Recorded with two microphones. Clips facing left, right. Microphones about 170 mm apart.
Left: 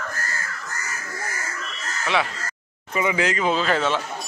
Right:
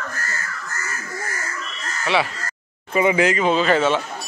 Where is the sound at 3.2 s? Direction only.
5° right (ahead or behind).